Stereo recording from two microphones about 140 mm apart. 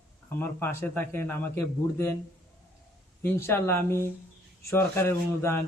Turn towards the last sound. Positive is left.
turn(degrees=20)  # may be behind; listen again after turning